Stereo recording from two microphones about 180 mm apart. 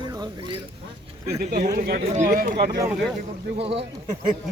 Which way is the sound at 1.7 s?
60° right (ahead or behind).